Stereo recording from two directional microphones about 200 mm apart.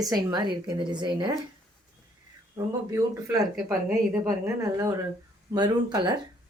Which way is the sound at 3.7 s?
15° right (ahead or behind).